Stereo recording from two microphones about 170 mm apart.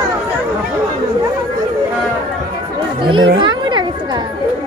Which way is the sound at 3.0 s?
30° right (ahead or behind).